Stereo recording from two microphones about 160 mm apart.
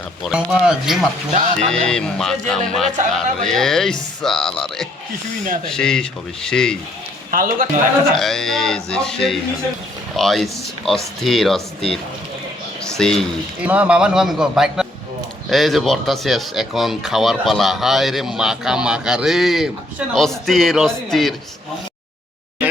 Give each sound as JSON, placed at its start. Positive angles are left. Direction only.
{"t": 0.2, "sound": "speech", "side_deg": 0}
{"t": 7.3, "sound": "a man's voice", "side_deg": -60}
{"t": 8.1, "sound": "speech", "side_deg": 0}
{"t": 12.8, "sound": "a sound", "side_deg": 5}
{"t": 13.6, "sound": "speech", "side_deg": -10}